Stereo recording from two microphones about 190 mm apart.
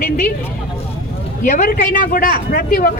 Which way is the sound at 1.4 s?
45° left (ahead or behind).